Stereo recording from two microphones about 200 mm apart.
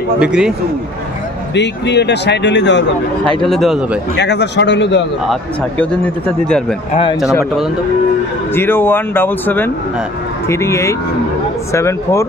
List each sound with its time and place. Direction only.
0.2 s speech: 5° right (ahead or behind)
1.5 s speech: 60° left (ahead or behind)
3.4 s speech: centre (ahead or behind)
4.2 s speech: 60° left (ahead or behind)
5.3 s speech: 5° left (ahead or behind)
6.9 s speech: 30° left (ahead or behind)
8.5 s speech: 10° left (ahead or behind)